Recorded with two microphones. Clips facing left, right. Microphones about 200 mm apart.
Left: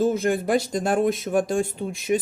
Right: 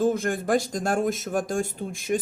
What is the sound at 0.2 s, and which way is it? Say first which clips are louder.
Speech: left 2 dB; 45° right (ahead or behind).